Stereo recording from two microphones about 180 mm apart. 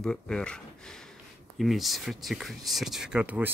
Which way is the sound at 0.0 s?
5° left (ahead or behind).